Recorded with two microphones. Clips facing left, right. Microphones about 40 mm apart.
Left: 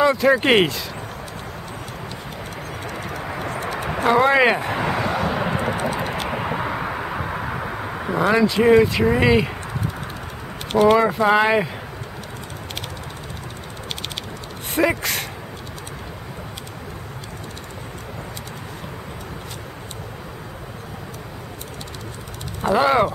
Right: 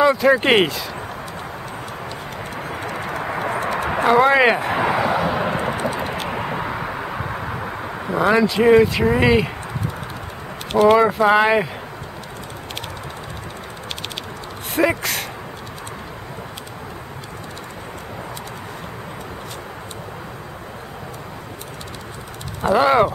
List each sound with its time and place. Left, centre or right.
0.0 s speech: centre
2.6 s clip-clop: centre
2.9 s pigeon: right
4.1 s a sound: centre
5.9 s vehicle: centre
10.8 s speech: centre
14.8 s speech: centre
22.6 s vehicle: centre